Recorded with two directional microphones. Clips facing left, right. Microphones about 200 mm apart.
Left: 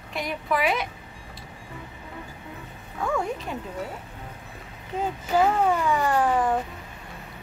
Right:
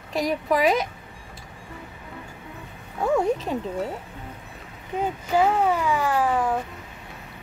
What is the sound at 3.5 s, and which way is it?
Speech, 35° right (ahead or behind).